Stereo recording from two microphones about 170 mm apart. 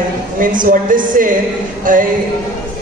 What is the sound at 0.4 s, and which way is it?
A man's voice, 50° right (ahead or behind).